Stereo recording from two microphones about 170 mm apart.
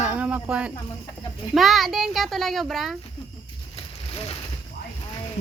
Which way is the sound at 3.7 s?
35° left (ahead or behind).